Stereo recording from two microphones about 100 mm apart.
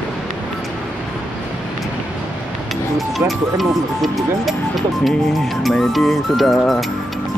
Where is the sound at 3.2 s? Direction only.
25° right (ahead or behind).